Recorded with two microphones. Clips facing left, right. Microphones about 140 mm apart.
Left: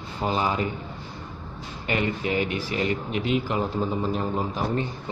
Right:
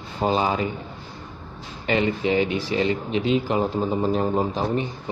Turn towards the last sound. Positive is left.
turn(degrees=-30)  # may be behind; listen again after turning